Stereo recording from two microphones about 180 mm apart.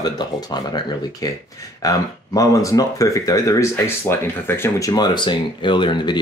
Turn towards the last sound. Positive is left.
turn(degrees=25)  # may be behind; listen again after turning